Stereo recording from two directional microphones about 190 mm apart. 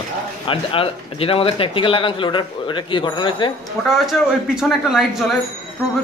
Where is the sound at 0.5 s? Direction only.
30° left (ahead or behind).